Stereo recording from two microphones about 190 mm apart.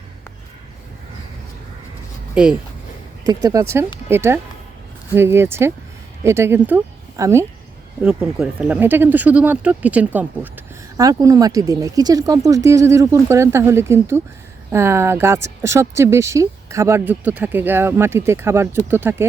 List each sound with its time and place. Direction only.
2.3 s speech: 5° right (ahead or behind)
3.2 s speech: 15° right (ahead or behind)